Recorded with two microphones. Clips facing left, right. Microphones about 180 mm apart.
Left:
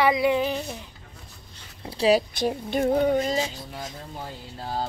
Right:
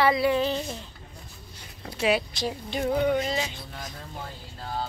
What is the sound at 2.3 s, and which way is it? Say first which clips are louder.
Speech: left 5 dB; 50° left (ahead or behind).